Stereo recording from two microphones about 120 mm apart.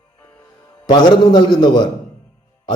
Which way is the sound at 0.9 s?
35° left (ahead or behind).